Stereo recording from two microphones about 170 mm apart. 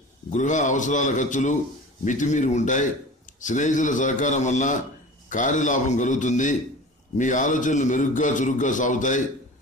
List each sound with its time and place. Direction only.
0.3 s a man's voice: 45° left (ahead or behind)